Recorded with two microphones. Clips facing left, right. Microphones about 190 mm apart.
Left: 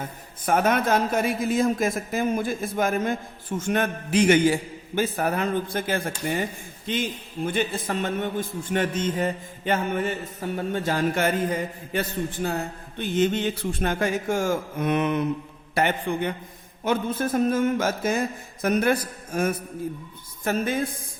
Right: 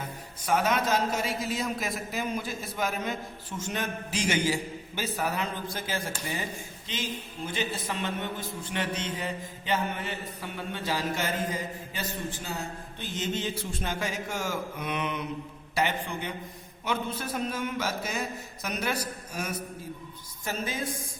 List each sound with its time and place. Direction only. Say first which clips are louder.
0.4 s a man's voice: left 5 dB; 55° left (ahead or behind)